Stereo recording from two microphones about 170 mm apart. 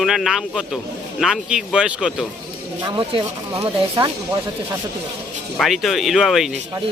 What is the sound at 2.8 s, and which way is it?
Speech, 25° right (ahead or behind).